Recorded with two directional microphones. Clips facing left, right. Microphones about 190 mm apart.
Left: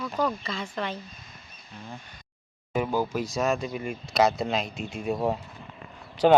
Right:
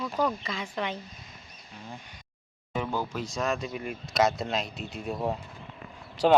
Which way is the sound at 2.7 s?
10° left (ahead or behind).